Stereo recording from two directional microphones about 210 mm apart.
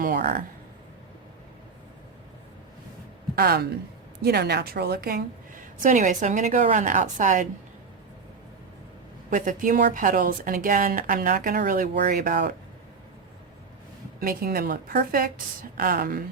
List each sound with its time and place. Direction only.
0.0 s speech: 40° right (ahead or behind)
3.3 s a woman's voice: 50° right (ahead or behind)
9.3 s a woman's voice: 40° right (ahead or behind)
14.2 s a woman's voice: 45° right (ahead or behind)